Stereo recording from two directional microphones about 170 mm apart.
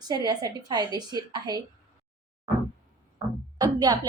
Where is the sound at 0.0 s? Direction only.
25° right (ahead or behind).